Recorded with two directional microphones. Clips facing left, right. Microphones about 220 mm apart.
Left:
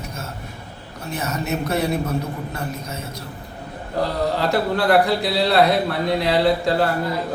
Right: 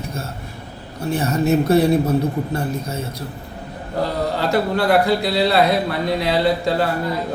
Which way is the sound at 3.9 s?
Centre (ahead or behind).